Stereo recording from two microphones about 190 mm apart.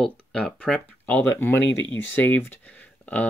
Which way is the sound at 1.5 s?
75° left (ahead or behind).